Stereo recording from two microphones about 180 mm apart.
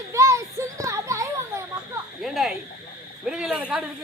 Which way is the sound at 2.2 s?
Centre (ahead or behind).